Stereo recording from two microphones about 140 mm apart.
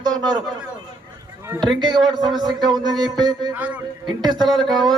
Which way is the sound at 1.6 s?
30° right (ahead or behind).